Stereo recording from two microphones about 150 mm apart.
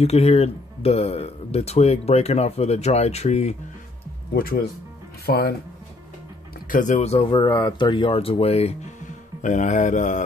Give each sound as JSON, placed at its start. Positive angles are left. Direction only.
{"t": 0.0, "sound": "speech", "side_deg": 45}
{"t": 4.3, "sound": "speech", "side_deg": 80}
{"t": 5.2, "sound": "speech", "side_deg": 90}
{"t": 6.7, "sound": "speech", "side_deg": 55}